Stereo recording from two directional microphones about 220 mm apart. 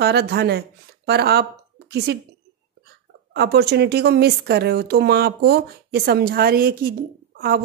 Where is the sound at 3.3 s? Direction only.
50° right (ahead or behind).